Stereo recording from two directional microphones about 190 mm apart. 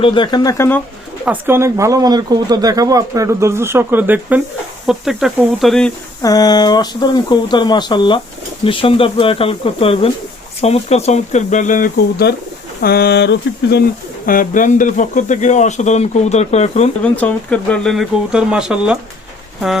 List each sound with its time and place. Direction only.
0.0 s speech: 25° left (ahead or behind)
1.2 s speech: 10° right (ahead or behind)
6.2 s speech: 20° left (ahead or behind); by 12.3 s 45° left (ahead or behind)
12.8 s a sound: 55° left (ahead or behind)
14.3 s speech: 45° left (ahead or behind)
17.0 s speech: 5° left (ahead or behind)